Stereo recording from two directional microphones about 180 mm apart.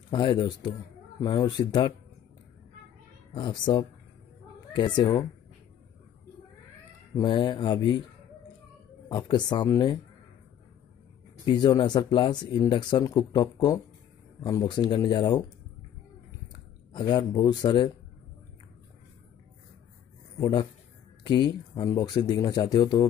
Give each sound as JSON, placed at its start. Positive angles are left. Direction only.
{"t": 0.1, "sound": "speech", "side_deg": 25}
{"t": 3.3, "sound": "speech", "side_deg": 25}
{"t": 7.2, "sound": "speech", "side_deg": 25}
{"t": 9.1, "sound": "speech", "side_deg": 25}
{"t": 11.4, "sound": "speech", "side_deg": 25}
{"t": 16.9, "sound": "speech", "side_deg": 25}
{"t": 20.3, "sound": "speech", "side_deg": 25}